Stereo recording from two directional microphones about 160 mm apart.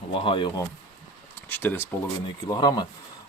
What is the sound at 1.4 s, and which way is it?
Speech, 10° left (ahead or behind).